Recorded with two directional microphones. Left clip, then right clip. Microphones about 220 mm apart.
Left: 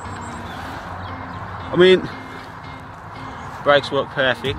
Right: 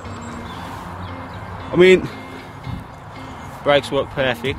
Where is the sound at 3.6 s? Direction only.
25° right (ahead or behind).